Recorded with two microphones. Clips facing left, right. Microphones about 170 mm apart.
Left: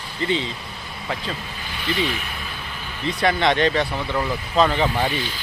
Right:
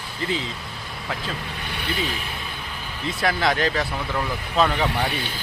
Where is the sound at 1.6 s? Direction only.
65° right (ahead or behind).